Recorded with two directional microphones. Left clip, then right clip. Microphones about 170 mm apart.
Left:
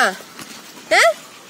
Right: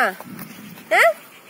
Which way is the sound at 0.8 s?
15° left (ahead or behind).